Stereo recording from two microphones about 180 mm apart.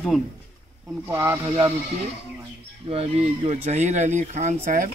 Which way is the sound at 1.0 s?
15° right (ahead or behind).